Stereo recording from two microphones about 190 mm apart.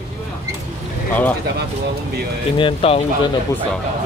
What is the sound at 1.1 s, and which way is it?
Speech, 10° left (ahead or behind).